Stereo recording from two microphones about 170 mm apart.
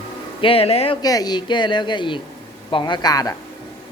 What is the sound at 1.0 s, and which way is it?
Speech, 20° left (ahead or behind).